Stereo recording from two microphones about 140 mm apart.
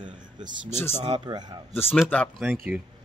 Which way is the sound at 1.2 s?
30° right (ahead or behind).